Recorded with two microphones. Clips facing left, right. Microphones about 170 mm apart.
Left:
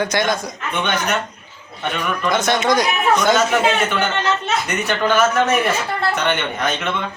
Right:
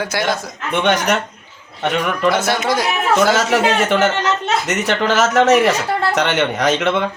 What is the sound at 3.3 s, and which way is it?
A man's voice, 85° right.